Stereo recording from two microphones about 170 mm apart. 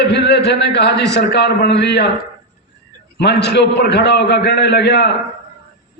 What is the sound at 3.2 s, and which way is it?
A man's voice, 80° left.